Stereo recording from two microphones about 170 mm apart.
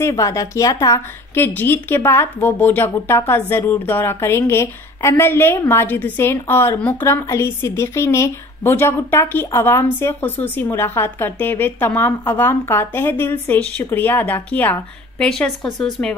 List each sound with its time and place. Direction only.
0.0 s a woman's voice: 20° left (ahead or behind)